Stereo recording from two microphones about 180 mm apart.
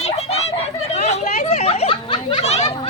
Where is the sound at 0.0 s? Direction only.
35° left (ahead or behind).